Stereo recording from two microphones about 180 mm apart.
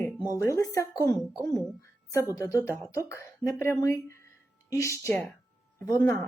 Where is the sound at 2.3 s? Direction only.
20° left (ahead or behind).